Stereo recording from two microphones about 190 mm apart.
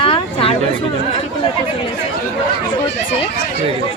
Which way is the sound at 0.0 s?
30° left (ahead or behind).